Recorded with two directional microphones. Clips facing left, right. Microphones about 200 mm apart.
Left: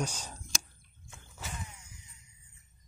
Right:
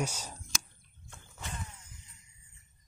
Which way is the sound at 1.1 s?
5° left (ahead or behind).